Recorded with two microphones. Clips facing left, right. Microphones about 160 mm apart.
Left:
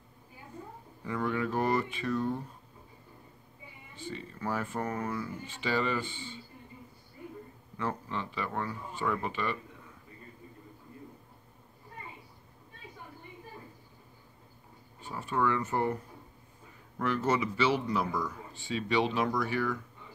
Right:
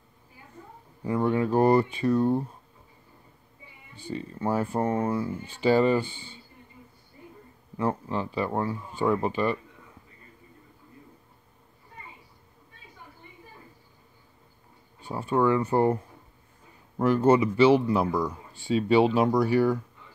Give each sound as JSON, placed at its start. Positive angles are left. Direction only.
{"t": 1.0, "sound": "a sound", "side_deg": -30}
{"t": 4.1, "sound": "speech", "side_deg": -30}
{"t": 7.7, "sound": "speech", "side_deg": -30}
{"t": 15.0, "sound": "speech", "side_deg": -35}
{"t": 17.0, "sound": "speech", "side_deg": -35}